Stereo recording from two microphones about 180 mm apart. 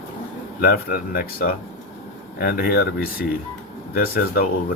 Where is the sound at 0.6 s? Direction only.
55° left (ahead or behind).